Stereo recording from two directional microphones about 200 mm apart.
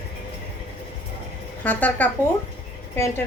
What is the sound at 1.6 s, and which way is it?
A woman's voice, 10° left (ahead or behind).